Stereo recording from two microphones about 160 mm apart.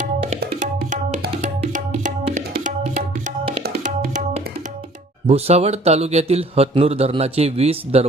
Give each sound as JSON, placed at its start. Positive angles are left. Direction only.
{"t": 0.6, "sound": "tabla", "side_deg": -50}
{"t": 1.4, "sound": "music", "side_deg": -50}
{"t": 2.5, "sound": "tabla", "side_deg": -55}
{"t": 3.8, "sound": "music", "side_deg": -50}
{"t": 5.2, "sound": "speech", "side_deg": -40}